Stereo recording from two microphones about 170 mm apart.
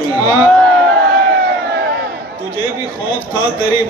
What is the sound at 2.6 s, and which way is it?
Speech, 30° left (ahead or behind).